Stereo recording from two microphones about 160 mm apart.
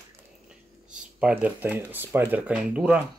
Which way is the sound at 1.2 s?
10° right (ahead or behind).